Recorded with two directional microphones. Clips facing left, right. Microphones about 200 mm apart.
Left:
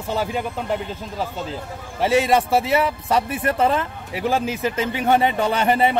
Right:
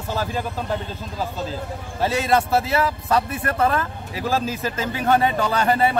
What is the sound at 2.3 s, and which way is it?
A man's voice, 15° left (ahead or behind).